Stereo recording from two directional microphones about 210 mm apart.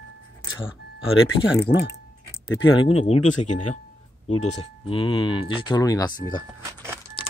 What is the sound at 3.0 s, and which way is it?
Speech, 30° left (ahead or behind).